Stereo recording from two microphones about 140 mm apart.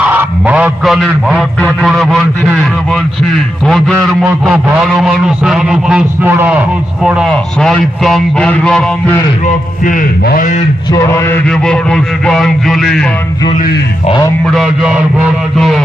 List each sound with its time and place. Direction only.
0.0 s a sound: 10° right (ahead or behind)
1.4 s a man's voice: centre (ahead or behind)
9.8 s a man's voice: 70° left (ahead or behind)
10.9 s mantra: 20° left (ahead or behind)
11.4 s a man's voice: 5° left (ahead or behind)
14.4 s a man's voice: centre (ahead or behind)